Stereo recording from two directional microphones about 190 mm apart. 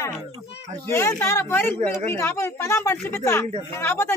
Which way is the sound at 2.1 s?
15° left (ahead or behind).